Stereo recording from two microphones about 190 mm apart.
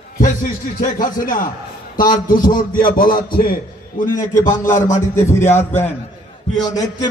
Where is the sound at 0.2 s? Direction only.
45° left (ahead or behind).